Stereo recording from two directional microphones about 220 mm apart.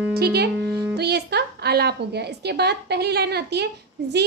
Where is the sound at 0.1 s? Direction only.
45° right (ahead or behind).